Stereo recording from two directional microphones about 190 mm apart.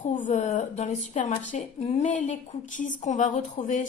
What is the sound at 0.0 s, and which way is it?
Speech, 40° left (ahead or behind).